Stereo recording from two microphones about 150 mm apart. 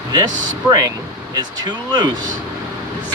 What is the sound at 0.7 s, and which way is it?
Speech, 25° right (ahead or behind).